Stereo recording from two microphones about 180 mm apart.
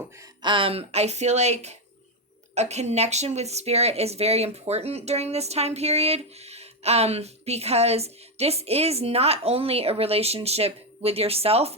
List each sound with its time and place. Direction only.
0.2 s speech: 25° right (ahead or behind)